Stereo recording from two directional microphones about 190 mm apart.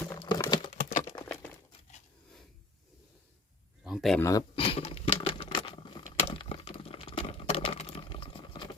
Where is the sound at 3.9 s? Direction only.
Centre (ahead or behind).